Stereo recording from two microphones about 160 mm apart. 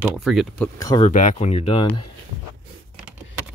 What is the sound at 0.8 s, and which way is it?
Speech, 25° left (ahead or behind).